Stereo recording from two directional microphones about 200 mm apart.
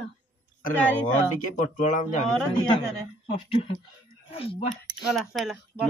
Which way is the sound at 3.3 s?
30° left (ahead or behind).